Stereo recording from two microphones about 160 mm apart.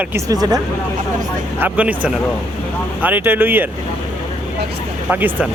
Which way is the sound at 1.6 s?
10° right (ahead or behind).